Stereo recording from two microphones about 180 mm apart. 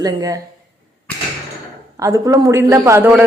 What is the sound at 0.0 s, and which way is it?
Speech, 20° right (ahead or behind).